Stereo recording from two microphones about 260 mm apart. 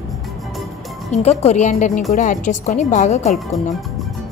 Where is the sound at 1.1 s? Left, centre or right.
Left.